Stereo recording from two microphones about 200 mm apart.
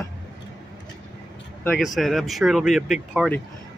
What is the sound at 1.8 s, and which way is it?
Speech, centre (ahead or behind).